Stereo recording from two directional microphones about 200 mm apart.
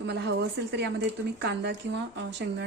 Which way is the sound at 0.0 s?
60° right (ahead or behind).